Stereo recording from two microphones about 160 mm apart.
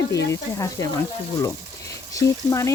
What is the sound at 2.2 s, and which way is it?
Speech, 20° left (ahead or behind).